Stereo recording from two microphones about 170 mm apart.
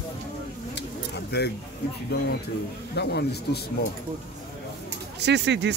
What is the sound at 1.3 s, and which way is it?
Speech, 75° left (ahead or behind).